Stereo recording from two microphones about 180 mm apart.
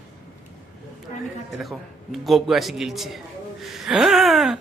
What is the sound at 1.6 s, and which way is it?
A man's voice, centre (ahead or behind).